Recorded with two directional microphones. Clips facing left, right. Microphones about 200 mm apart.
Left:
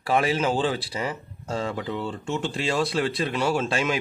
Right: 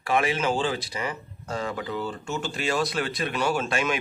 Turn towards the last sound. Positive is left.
turn(degrees=30)  # may be behind; listen again after turning